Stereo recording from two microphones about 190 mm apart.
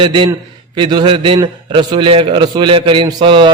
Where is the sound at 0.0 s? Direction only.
25° right (ahead or behind).